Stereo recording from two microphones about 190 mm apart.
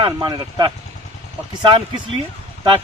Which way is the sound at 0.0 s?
25° right (ahead or behind).